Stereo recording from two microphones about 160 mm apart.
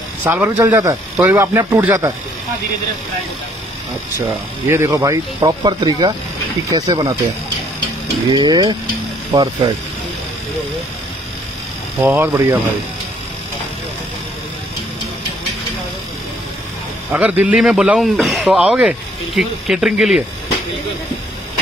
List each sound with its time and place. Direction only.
0.2 s speech: 10° right (ahead or behind)
4.6 s speech: 20° right (ahead or behind)
8.3 s speech: 25° right (ahead or behind)
12.0 s speech: 10° right (ahead or behind)
17.1 s a man's voice: 10° right (ahead or behind)